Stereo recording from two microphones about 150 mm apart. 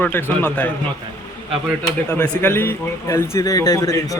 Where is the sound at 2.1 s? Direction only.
10° left (ahead or behind).